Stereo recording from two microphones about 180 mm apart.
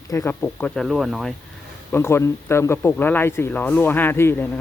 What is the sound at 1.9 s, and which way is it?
Speech, 15° left (ahead or behind).